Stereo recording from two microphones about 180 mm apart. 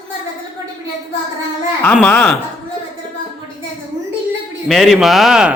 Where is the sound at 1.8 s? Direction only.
10° left (ahead or behind).